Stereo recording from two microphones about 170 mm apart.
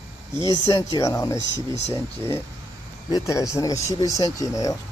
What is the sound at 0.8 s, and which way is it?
Speech, 20° left (ahead or behind).